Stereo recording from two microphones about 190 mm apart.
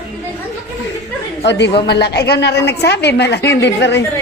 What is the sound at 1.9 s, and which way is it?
A woman's voice, 60° left (ahead or behind).